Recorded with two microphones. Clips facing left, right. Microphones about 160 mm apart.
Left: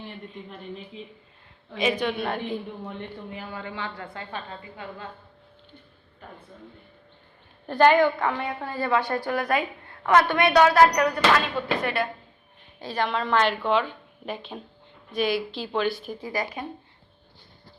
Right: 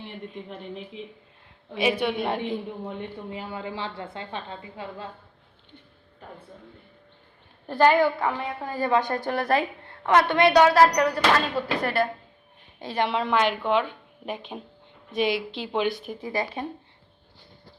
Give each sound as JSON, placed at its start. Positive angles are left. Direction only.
{"t": 1.7, "sound": "a woman's voice", "side_deg": -10}
{"t": 2.1, "sound": "a woman's voice", "side_deg": -20}
{"t": 7.7, "sound": "a woman's voice", "side_deg": -5}
{"t": 9.3, "sound": "a woman's voice", "side_deg": -30}
{"t": 12.8, "sound": "a woman's voice", "side_deg": -25}